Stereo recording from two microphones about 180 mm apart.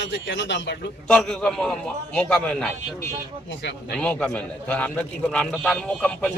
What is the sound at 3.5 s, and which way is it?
Speech, 75° left (ahead or behind).